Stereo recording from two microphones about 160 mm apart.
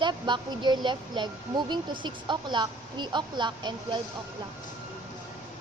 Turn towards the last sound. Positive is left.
turn(degrees=-30)  # may be behind; listen again after turning